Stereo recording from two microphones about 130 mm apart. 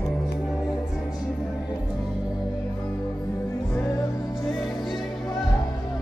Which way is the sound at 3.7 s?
15° left (ahead or behind).